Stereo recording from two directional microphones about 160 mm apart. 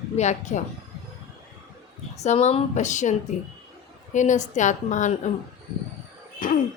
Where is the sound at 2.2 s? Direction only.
45° left (ahead or behind).